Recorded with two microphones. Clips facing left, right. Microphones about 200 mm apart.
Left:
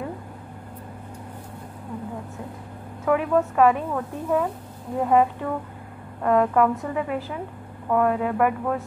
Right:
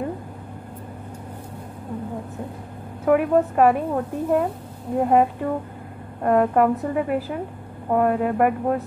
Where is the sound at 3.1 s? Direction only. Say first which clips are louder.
Right 3 dB; 50° right (ahead or behind).